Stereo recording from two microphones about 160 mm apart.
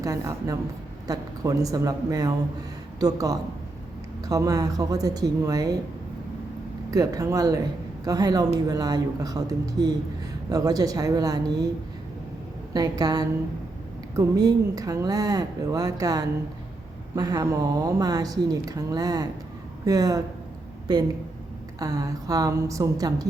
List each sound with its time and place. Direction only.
0.0 s a woman's voice: 20° right (ahead or behind)
6.9 s a woman's voice: 20° right (ahead or behind)
12.7 s a woman's voice: 25° right (ahead or behind)
21.8 s a woman's voice: 20° right (ahead or behind)